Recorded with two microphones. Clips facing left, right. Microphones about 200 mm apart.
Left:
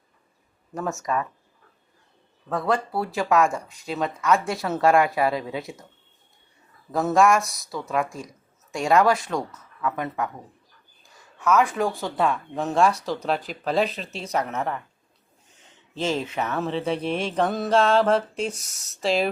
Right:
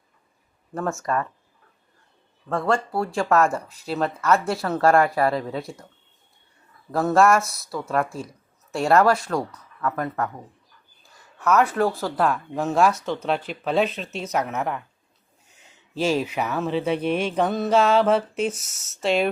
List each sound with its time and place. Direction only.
0.8 s speech: centre (ahead or behind)
2.5 s speech: 5° left (ahead or behind)
6.9 s speech: centre (ahead or behind)
11.6 s speech: centre (ahead or behind)
16.0 s speech: 10° right (ahead or behind)
17.0 s mantra: 30° left (ahead or behind)
17.2 s speech: 5° right (ahead or behind)